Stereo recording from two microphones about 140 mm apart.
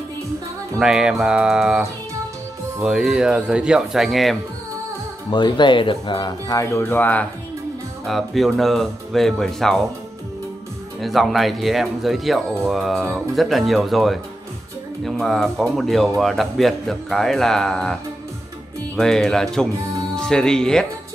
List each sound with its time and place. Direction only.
0.7 s speech: 5° right (ahead or behind)
5.3 s speech: 35° left (ahead or behind); by 7.2 s 10° left (ahead or behind)
8.0 s speech: centre (ahead or behind)
11.0 s speech: centre (ahead or behind)
18.9 s speech: 5° left (ahead or behind)